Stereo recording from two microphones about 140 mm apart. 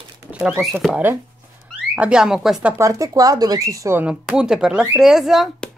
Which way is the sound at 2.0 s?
5° right (ahead or behind).